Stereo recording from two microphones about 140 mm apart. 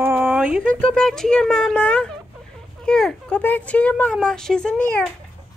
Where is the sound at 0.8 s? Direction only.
5° left (ahead or behind).